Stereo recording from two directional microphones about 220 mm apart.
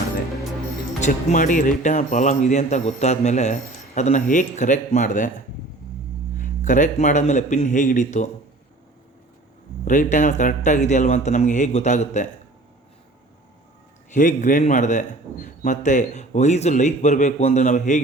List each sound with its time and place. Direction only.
1.0 s speech: 35° left (ahead or behind)
6.3 s speech: 35° left (ahead or behind)
9.8 s speech: 35° left (ahead or behind)
14.1 s speech: 35° left (ahead or behind)